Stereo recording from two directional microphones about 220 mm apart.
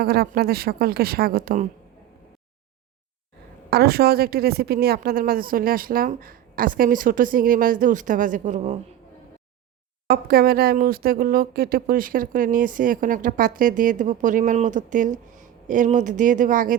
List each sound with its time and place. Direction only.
0.0 s a woman's voice: 45° right (ahead or behind)
3.7 s speech: 45° right (ahead or behind)
10.1 s speech: 45° right (ahead or behind)